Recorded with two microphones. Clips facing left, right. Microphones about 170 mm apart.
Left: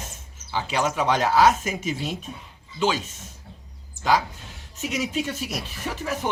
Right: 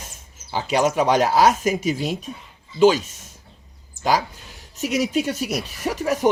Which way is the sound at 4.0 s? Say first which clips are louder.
Right 3 dB; 60° left (ahead or behind).